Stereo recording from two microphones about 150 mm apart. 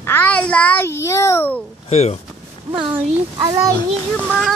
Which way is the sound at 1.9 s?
45° left (ahead or behind).